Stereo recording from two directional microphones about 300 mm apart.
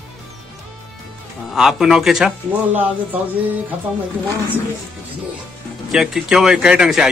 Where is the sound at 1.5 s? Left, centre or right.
Centre.